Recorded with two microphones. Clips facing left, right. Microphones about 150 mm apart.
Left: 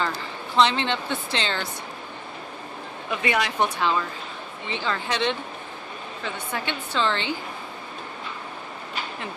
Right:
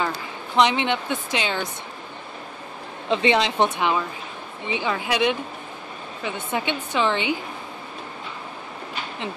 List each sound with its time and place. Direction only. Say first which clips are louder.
0.6 s speech: right 2 dB; 15° right (ahead or behind)
3.1 s speech: right 5 dB; 25° right (ahead or behind)